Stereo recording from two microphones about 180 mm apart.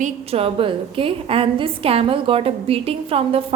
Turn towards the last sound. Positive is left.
turn(degrees=-30)  # may be behind; listen again after turning